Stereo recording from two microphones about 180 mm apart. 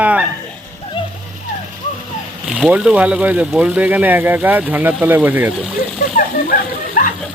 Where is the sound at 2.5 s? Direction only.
5° right (ahead or behind).